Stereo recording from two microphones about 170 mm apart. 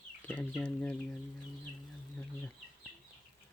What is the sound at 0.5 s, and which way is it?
Speech, 5° left (ahead or behind).